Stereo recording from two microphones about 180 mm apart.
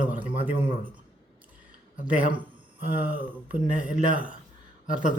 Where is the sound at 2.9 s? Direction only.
10° right (ahead or behind).